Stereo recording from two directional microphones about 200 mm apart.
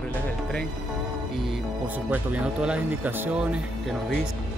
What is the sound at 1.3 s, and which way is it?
Speech, centre (ahead or behind).